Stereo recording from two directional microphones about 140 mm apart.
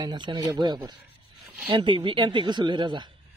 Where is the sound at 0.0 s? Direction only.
30° right (ahead or behind).